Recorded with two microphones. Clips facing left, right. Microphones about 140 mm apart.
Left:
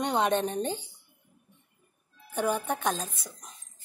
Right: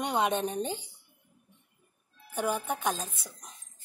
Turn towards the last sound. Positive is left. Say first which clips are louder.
# left 2 dB
turn(degrees=-10)  # may be behind; listen again after turning